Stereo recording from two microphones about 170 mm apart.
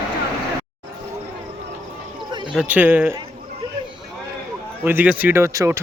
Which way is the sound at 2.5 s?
5° right (ahead or behind).